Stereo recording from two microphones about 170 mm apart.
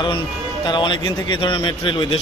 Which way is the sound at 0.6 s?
30° left (ahead or behind).